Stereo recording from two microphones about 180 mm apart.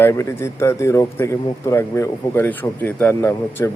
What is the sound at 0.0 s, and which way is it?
Speech, 15° left (ahead or behind).